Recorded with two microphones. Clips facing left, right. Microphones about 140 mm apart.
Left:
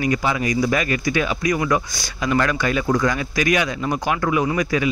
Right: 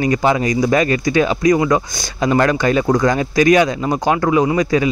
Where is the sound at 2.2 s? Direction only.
35° right (ahead or behind).